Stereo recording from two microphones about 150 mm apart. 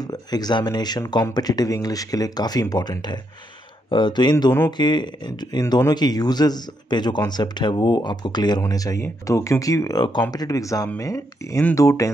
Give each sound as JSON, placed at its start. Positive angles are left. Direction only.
{"t": 0.0, "sound": "speech", "side_deg": 25}